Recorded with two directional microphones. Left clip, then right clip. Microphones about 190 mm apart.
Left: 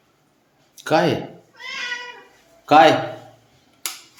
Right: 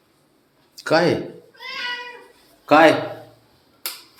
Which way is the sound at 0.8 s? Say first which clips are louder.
Right 1 dB; 10° left (ahead or behind).